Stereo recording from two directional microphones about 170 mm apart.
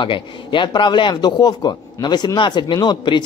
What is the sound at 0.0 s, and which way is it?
Speech, 30° left (ahead or behind).